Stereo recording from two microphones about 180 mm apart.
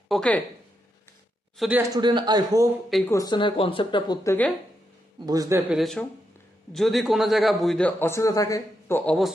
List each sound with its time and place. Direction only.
0.1 s speech: 5° left (ahead or behind)
1.5 s a man's voice: 5° right (ahead or behind)
1.8 s a man's voice: 25° right (ahead or behind)
3.1 s speech: 20° left (ahead or behind)
5.2 s a man's voice: 20° right (ahead or behind)
5.7 s a man's voice: centre (ahead or behind)